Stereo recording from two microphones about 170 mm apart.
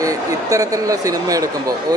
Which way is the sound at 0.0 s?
20° right (ahead or behind).